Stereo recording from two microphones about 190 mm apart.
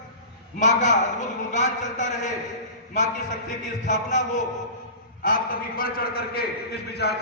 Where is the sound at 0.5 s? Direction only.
40° left (ahead or behind).